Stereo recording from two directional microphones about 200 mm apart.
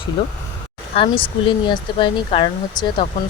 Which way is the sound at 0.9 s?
25° left (ahead or behind).